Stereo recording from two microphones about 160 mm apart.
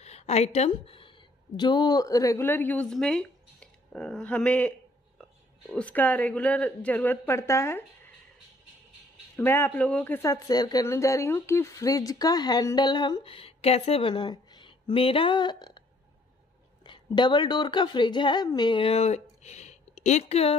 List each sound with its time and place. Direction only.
0.0 s a woman's voice: 40° left (ahead or behind); by 4.7 s 10° left (ahead or behind)
5.8 s a woman's voice: 10° left (ahead or behind)
9.4 s speech: 15° left (ahead or behind); by 15.8 s 30° left (ahead or behind)
16.8 s a woman's voice: 30° left (ahead or behind)